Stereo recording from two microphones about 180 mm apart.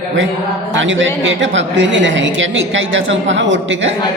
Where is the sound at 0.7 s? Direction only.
90° right.